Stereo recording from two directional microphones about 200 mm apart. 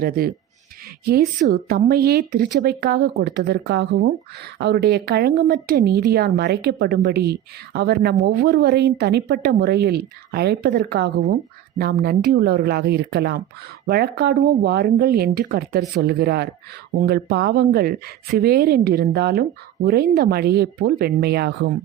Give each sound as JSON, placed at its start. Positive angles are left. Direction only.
{"t": 1.0, "sound": "speech", "side_deg": -50}